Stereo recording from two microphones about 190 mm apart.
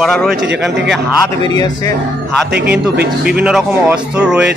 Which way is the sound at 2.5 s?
60° right (ahead or behind).